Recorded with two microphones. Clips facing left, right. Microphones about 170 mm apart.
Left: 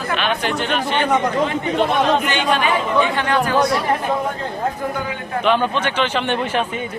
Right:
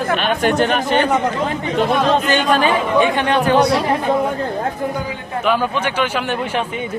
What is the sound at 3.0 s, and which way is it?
Speech, 20° right (ahead or behind).